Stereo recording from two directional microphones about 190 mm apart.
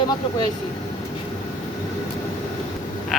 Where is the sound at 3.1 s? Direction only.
Centre (ahead or behind).